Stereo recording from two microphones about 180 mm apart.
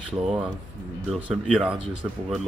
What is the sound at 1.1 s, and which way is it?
Speech, centre (ahead or behind).